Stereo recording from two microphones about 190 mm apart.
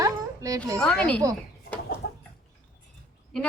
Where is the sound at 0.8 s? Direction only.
5° left (ahead or behind).